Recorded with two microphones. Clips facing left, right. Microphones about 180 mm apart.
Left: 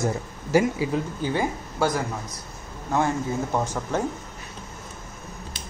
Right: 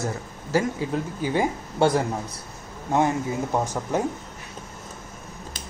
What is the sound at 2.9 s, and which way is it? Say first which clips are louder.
Speech: right 2 dB; 20° right (ahead or behind).